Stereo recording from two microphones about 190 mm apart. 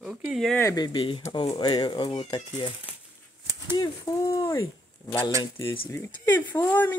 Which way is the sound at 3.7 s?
15° left (ahead or behind).